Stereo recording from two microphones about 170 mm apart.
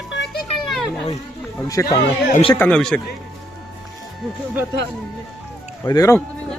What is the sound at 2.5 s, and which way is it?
Speech, 10° left (ahead or behind).